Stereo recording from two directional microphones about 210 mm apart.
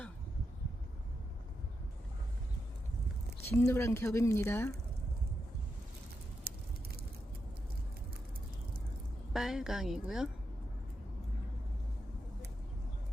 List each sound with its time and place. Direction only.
3.5 s speech: 10° left (ahead or behind)
6.5 s a sound: 50° right (ahead or behind)
9.3 s a woman's voice: centre (ahead or behind)